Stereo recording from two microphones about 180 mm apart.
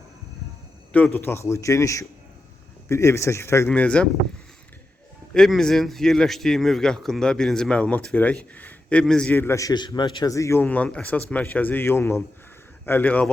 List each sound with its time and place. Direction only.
0.9 s speech: 10° left (ahead or behind)
5.3 s a man's voice: centre (ahead or behind)